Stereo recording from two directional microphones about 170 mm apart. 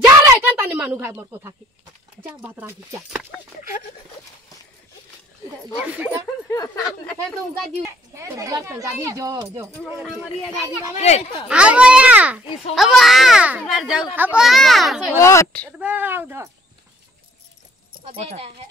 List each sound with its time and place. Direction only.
0.2 s a sound: 10° right (ahead or behind)
2.2 s a child's voice: 10° right (ahead or behind)
5.8 s a child's voice: 10° right (ahead or behind)
6.5 s a sound: 20° left (ahead or behind)
6.8 s chatter: 5° left (ahead or behind)
7.8 s a child's voice: 15° right (ahead or behind)
11.0 s speech: 40° left (ahead or behind)
11.4 s a child's voice: 5° right (ahead or behind)
14.4 s a child's voice: centre (ahead or behind)
15.1 s a woman's voice: 15° left (ahead or behind)
15.8 s a child's voice: 10° right (ahead or behind)
18.0 s speech: 35° right (ahead or behind)